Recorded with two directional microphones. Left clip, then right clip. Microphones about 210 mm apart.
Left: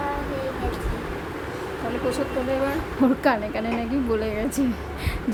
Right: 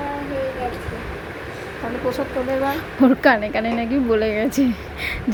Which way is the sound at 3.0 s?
15° right (ahead or behind).